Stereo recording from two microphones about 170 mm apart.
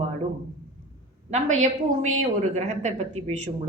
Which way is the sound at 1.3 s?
45° right (ahead or behind).